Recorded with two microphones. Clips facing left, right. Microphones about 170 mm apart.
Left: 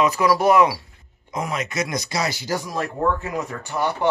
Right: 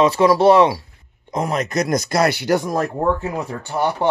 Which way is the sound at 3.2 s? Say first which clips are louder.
Right 3 dB; 30° right (ahead or behind).